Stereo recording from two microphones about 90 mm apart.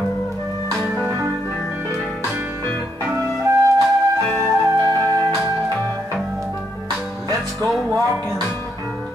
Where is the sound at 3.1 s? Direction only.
30° right (ahead or behind).